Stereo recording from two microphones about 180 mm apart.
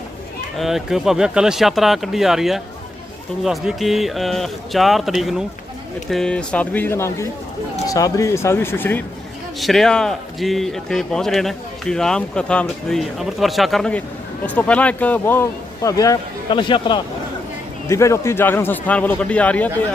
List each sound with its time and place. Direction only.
0.6 s a man's voice: centre (ahead or behind)
9.6 s a man's voice: centre (ahead or behind); by 17.0 s 25° left (ahead or behind)
17.8 s a man's voice: 15° left (ahead or behind)